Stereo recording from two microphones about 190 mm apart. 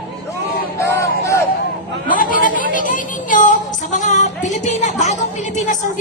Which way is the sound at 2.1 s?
45° left (ahead or behind).